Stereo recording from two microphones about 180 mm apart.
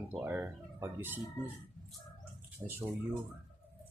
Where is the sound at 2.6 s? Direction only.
20° right (ahead or behind).